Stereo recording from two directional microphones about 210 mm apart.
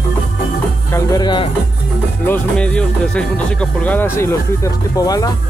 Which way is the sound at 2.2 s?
5° left (ahead or behind).